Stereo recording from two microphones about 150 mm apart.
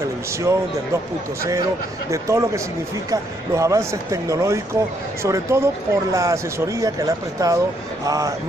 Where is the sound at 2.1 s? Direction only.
20° right (ahead or behind).